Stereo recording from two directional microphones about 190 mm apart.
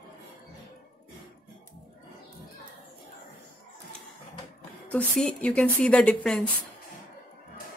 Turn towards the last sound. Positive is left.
turn(degrees=5)  # may be behind; listen again after turning